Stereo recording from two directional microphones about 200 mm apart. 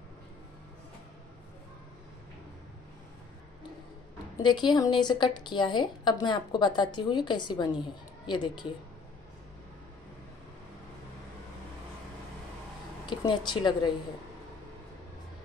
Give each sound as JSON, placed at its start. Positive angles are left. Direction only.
{"t": 4.4, "sound": "a woman's voice", "side_deg": 20}
{"t": 13.0, "sound": "speech", "side_deg": 20}